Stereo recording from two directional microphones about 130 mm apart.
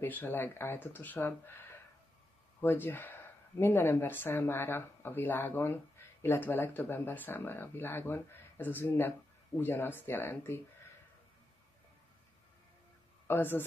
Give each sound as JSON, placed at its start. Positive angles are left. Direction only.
{"t": 0.0, "sound": "speech", "side_deg": 15}
{"t": 13.3, "sound": "speech", "side_deg": 15}